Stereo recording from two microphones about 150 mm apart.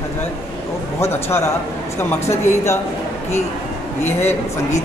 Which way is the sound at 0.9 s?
15° left (ahead or behind).